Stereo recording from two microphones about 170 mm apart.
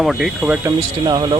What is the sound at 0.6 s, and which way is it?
Speech, 25° right (ahead or behind).